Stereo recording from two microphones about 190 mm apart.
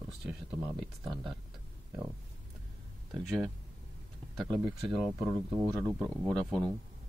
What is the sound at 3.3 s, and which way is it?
Speech, centre (ahead or behind).